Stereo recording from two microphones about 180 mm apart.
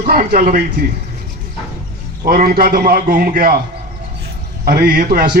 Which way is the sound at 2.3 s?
55° right (ahead or behind).